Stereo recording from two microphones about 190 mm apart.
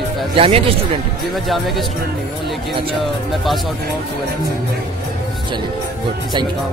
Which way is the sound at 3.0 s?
Centre (ahead or behind).